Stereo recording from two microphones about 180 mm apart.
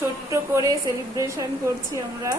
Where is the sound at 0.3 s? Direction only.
15° right (ahead or behind).